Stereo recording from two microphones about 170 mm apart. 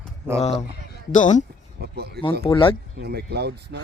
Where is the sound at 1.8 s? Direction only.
70° right (ahead or behind).